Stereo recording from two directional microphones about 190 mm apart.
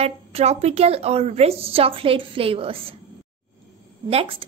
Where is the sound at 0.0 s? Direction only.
35° right (ahead or behind).